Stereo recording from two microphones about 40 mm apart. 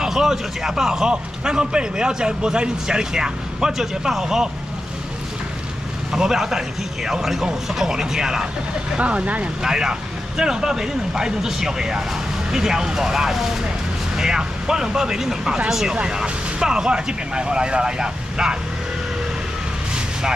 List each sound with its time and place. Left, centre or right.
0.0 s a man's voice: centre
6.1 s a man's voice: centre
8.9 s speech: right
9.6 s a man's voice: centre